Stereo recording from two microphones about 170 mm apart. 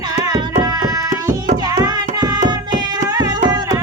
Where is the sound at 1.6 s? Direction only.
25° right (ahead or behind).